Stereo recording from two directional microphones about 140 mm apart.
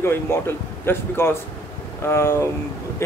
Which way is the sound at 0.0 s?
15° left (ahead or behind).